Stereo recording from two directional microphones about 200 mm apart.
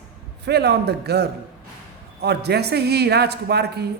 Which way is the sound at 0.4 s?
55° right (ahead or behind).